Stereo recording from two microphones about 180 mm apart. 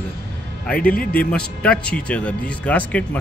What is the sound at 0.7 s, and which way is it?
A man's voice, 5° left (ahead or behind).